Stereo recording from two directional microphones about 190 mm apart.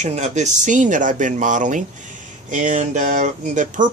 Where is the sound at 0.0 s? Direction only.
40° right (ahead or behind).